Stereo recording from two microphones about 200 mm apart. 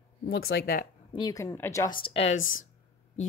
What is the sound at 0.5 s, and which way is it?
Speech, 50° left (ahead or behind).